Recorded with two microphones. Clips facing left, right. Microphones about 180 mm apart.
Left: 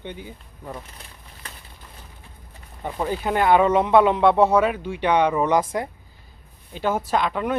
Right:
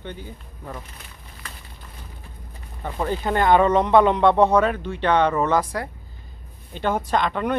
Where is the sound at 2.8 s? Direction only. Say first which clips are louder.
Even; 10° left (ahead or behind).